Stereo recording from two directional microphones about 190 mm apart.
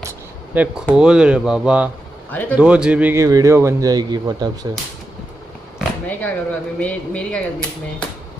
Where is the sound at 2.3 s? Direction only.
10° left (ahead or behind).